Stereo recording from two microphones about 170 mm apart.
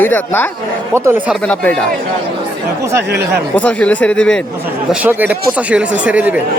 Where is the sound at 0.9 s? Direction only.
15° right (ahead or behind).